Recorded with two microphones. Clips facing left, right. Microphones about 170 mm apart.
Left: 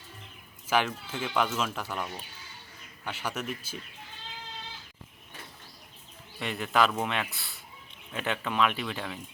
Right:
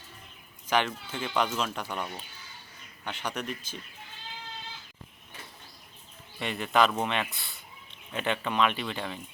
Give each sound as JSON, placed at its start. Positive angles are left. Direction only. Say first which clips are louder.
{"t": 0.7, "sound": "speech", "louder": "even", "side_deg": 5}
{"t": 6.4, "sound": "speech", "louder": "right 1 dB", "side_deg": 0}